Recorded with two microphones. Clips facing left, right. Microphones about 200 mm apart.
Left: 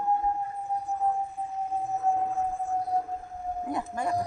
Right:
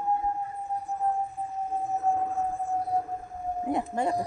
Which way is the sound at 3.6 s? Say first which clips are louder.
Right 4 dB; 25° right (ahead or behind).